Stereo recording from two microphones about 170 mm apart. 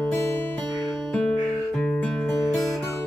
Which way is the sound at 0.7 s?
25° right (ahead or behind).